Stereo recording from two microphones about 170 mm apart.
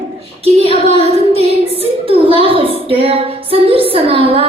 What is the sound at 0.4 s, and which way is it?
Child singing, 35° right (ahead or behind).